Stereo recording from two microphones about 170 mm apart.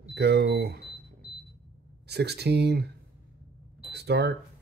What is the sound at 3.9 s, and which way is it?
Speech, 75° right (ahead or behind).